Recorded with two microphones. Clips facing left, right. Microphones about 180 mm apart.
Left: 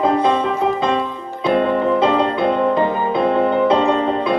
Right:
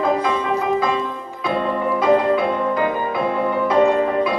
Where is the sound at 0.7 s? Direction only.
25° left (ahead or behind).